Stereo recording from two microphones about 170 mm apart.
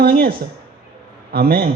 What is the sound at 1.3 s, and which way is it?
Speech, 65° right (ahead or behind).